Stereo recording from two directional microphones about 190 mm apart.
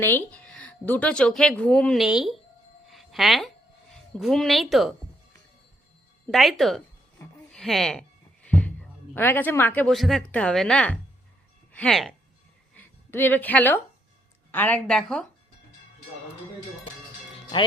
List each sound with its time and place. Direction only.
0.0 s speech: 10° left (ahead or behind)
2.9 s music: centre (ahead or behind)
4.2 s speech: centre (ahead or behind)
6.3 s speech: centre (ahead or behind)
8.4 s a sound: 10° left (ahead or behind)
9.1 s speech: 10° left (ahead or behind)
12.7 s a sound: 10° left (ahead or behind)
14.5 s speech: 10° left (ahead or behind)
17.5 s speech: 25° left (ahead or behind)